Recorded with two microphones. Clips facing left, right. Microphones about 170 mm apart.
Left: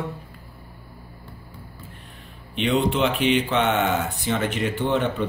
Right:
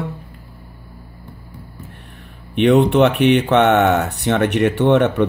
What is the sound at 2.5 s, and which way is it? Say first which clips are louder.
Speech: right 9 dB; 65° right (ahead or behind).